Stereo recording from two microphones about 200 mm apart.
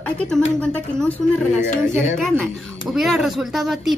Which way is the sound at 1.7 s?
35° left (ahead or behind).